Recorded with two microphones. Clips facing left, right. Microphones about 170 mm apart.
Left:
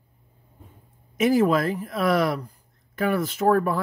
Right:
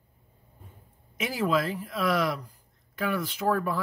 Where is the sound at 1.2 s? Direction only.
50° left (ahead or behind).